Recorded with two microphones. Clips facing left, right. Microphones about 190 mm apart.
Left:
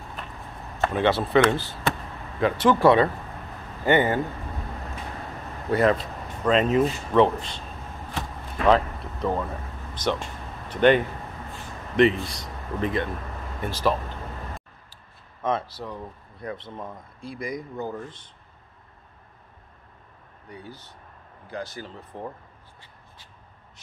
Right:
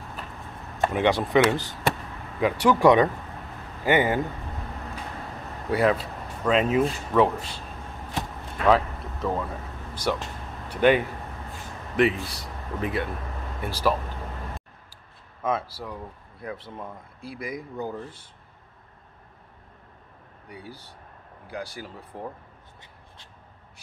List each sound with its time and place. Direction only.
0.7 s speech: 15° right (ahead or behind)
5.7 s speech: 5° right (ahead or behind)
8.6 s a sound: 5° right (ahead or behind)
9.9 s speech: 10° right (ahead or behind)
15.4 s speech: 5° right (ahead or behind)
20.4 s speech: 10° right (ahead or behind)